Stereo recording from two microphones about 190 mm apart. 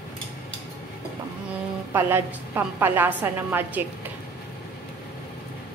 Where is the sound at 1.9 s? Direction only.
10° right (ahead or behind).